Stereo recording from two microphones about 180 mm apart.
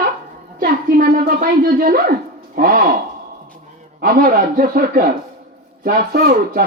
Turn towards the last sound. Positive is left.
turn(degrees=-60)  # may be behind; listen again after turning